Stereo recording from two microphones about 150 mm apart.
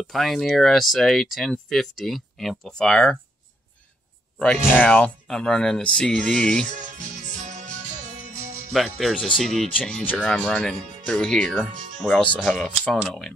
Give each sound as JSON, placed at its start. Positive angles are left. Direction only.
{"t": 0.0, "sound": "speech", "side_deg": 0}
{"t": 4.4, "sound": "speech", "side_deg": 5}
{"t": 7.0, "sound": "music", "side_deg": -55}
{"t": 8.7, "sound": "speech", "side_deg": 0}